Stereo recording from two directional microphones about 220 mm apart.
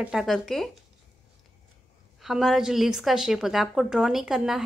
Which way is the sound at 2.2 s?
Centre (ahead or behind).